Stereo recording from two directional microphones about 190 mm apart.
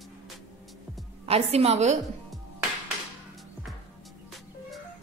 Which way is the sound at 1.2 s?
30° right (ahead or behind).